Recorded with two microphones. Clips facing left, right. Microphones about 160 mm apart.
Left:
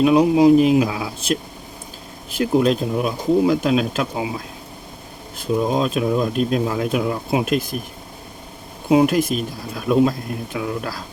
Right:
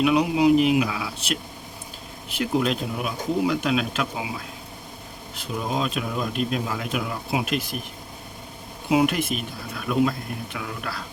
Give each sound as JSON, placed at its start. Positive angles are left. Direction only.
{"t": 0.0, "sound": "speech", "side_deg": 35}
{"t": 2.4, "sound": "speech", "side_deg": 35}
{"t": 5.7, "sound": "speech", "side_deg": 40}
{"t": 8.9, "sound": "speech", "side_deg": 35}